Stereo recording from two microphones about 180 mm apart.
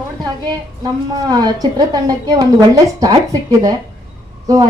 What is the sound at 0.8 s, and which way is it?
Speech, 20° right (ahead or behind).